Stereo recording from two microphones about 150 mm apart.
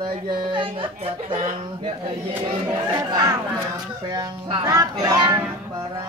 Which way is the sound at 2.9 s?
30° right (ahead or behind).